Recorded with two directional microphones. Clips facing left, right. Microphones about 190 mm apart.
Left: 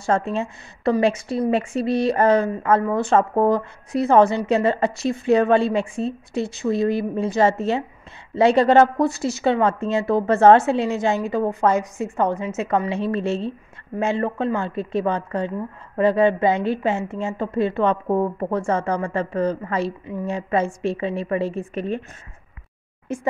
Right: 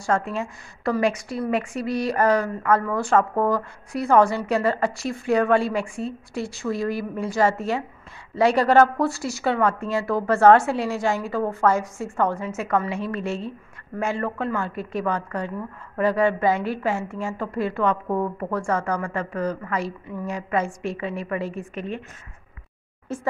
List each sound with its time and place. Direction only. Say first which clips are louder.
0.0 s a woman's voice: left 3 dB; 25° left (ahead or behind)
23.1 s speech: left 3 dB; 15° left (ahead or behind)